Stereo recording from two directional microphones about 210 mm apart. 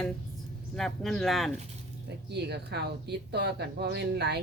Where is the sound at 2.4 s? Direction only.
50° right (ahead or behind).